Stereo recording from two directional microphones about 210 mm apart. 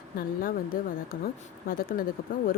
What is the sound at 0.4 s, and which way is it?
A woman's voice, 40° left (ahead or behind).